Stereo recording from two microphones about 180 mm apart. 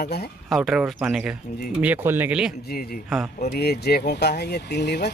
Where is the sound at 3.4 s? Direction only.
65° left (ahead or behind).